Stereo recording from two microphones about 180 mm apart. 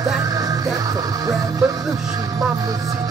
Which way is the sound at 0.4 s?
20° right (ahead or behind).